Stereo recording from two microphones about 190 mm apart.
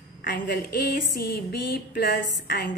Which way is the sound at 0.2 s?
45° left (ahead or behind).